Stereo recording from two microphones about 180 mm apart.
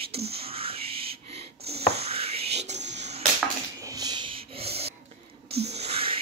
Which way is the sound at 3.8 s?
20° right (ahead or behind).